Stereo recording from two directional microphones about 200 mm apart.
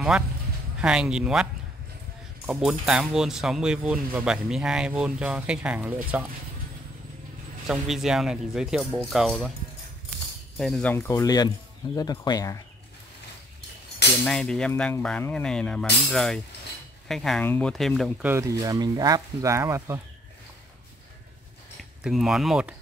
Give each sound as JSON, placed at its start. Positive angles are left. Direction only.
{"t": 0.7, "sound": "speech", "side_deg": -5}
{"t": 7.6, "sound": "speech", "side_deg": 0}
{"t": 10.6, "sound": "speech", "side_deg": 5}
{"t": 14.2, "sound": "speech", "side_deg": 5}
{"t": 18.3, "sound": "speech", "side_deg": -15}
{"t": 22.0, "sound": "speech", "side_deg": 0}